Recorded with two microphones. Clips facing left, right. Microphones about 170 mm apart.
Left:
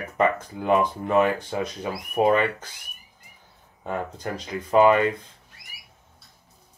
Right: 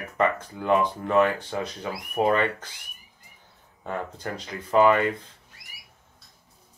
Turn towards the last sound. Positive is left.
turn(degrees=15)  # may be behind; listen again after turning